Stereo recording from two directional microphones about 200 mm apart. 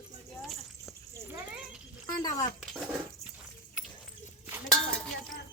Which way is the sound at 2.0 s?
20° left (ahead or behind).